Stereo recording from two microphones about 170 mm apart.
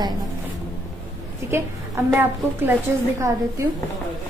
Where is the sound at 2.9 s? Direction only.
15° right (ahead or behind).